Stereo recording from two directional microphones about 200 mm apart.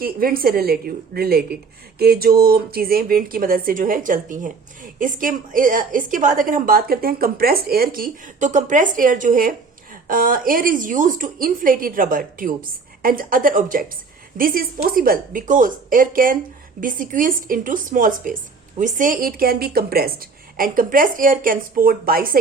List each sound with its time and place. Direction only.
0.0 s a woman's voice: 45° right (ahead or behind)